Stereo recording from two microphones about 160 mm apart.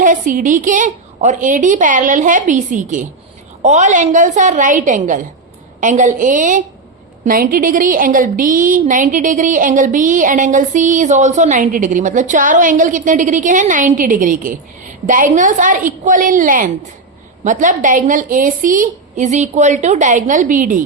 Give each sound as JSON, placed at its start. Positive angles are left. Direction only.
{"t": 0.0, "sound": "a woman's voice", "side_deg": -55}